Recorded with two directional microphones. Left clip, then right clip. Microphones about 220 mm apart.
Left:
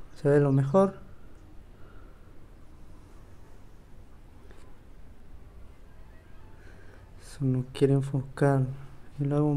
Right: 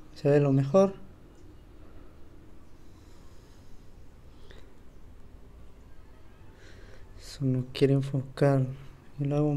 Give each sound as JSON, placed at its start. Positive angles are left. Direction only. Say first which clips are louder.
{"t": 0.2, "sound": "speech", "louder": "even", "side_deg": 15}
{"t": 7.2, "sound": "speech", "louder": "even", "side_deg": 10}